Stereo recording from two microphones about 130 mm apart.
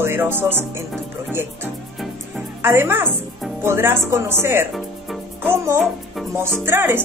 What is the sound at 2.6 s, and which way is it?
Speech, 15° right (ahead or behind).